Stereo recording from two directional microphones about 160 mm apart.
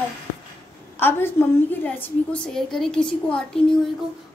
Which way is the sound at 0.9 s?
15° left (ahead or behind).